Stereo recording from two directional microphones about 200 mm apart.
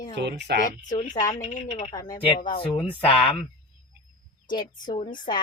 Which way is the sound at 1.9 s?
20° left (ahead or behind).